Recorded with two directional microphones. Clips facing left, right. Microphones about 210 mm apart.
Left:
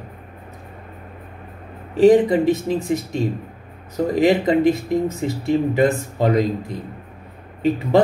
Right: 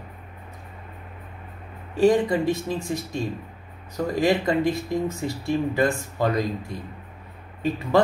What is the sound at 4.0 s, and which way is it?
Speech, 20° left (ahead or behind).